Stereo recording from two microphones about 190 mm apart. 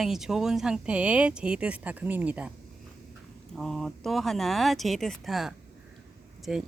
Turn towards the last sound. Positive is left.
turn(degrees=-5)  # may be behind; listen again after turning